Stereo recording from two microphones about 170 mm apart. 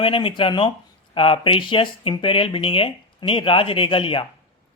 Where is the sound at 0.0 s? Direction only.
30° left (ahead or behind).